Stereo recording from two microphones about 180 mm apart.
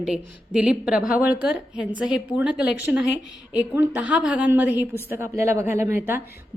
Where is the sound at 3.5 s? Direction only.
10° right (ahead or behind).